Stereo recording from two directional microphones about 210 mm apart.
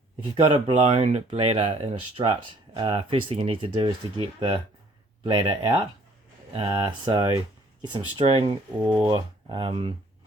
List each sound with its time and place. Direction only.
0.4 s speech: 25° right (ahead or behind)